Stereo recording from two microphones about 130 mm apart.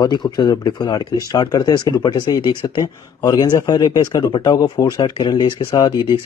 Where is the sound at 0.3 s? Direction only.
30° left (ahead or behind).